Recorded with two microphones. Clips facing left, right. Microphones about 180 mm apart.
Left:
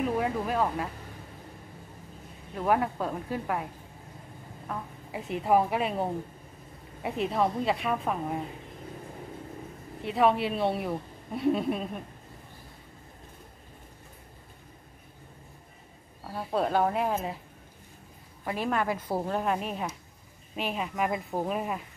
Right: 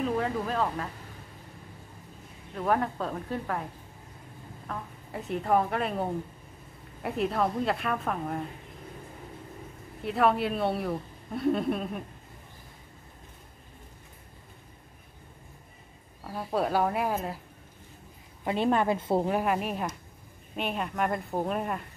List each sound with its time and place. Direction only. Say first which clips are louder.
0.0 s speech: even; 10° left (ahead or behind)
2.5 s a woman's voice: left 1 dB; 10° left (ahead or behind)
4.6 s a woman's voice: left 1 dB; 5° left (ahead or behind)
10.0 s a woman's voice: left 1 dB; centre (ahead or behind)
16.3 s a woman's voice: even; centre (ahead or behind)
18.4 s a woman's voice: right 4 dB; 25° right (ahead or behind)
19.2 s a woman's voice: right 2 dB; 10° right (ahead or behind)